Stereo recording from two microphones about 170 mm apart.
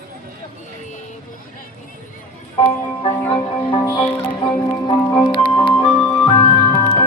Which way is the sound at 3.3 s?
30° left (ahead or behind).